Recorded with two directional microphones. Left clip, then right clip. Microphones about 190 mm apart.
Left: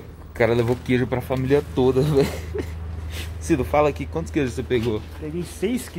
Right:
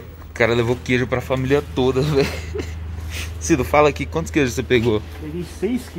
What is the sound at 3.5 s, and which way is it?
Speech, 5° right (ahead or behind).